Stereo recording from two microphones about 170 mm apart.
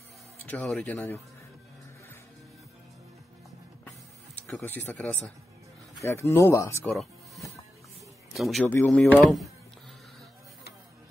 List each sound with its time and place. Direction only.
0.5 s speech: 10° left (ahead or behind)
4.6 s speech: 10° left (ahead or behind)
6.0 s speech: 15° left (ahead or behind)
8.3 s a man's voice: centre (ahead or behind)